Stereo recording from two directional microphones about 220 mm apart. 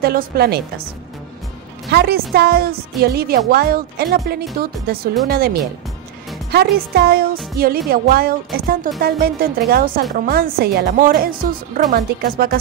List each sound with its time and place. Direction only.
0.0 s a woman's voice: 45° right (ahead or behind)
1.9 s a woman's voice: 45° right (ahead or behind)